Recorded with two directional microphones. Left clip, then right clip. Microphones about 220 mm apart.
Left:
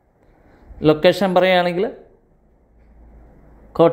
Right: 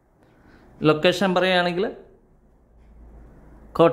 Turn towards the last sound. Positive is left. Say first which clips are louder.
# left 3 dB
turn(degrees=-5)  # may be behind; listen again after turning